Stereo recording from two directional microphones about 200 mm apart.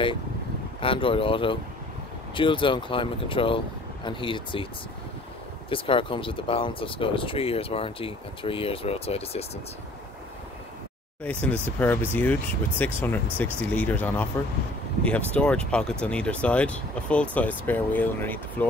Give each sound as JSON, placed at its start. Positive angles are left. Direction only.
{"t": 0.7, "sound": "speech", "side_deg": 25}
{"t": 5.7, "sound": "speech", "side_deg": 25}
{"t": 11.4, "sound": "speech", "side_deg": 10}
{"t": 15.3, "sound": "speech", "side_deg": 5}